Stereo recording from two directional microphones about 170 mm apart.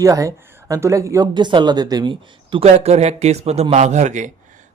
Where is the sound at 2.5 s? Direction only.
40° right (ahead or behind).